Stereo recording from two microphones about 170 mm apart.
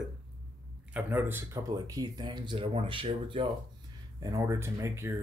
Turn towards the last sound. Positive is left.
turn(degrees=-15)  # may be behind; listen again after turning